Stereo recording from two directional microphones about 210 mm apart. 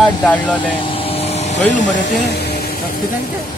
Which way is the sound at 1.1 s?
30° left (ahead or behind).